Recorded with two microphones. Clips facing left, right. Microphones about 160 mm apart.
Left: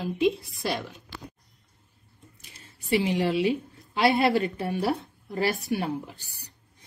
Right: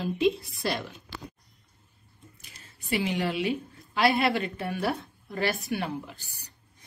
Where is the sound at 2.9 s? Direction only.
30° left (ahead or behind).